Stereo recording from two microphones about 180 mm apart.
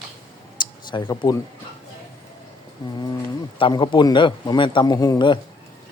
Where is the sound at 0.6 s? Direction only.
25° left (ahead or behind).